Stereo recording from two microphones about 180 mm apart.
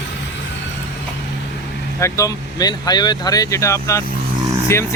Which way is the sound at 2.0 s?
20° left (ahead or behind).